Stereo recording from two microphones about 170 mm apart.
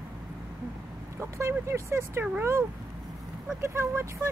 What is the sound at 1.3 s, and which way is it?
A woman's voice, 15° right (ahead or behind).